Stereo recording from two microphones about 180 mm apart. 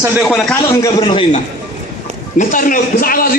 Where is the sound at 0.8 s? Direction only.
25° left (ahead or behind).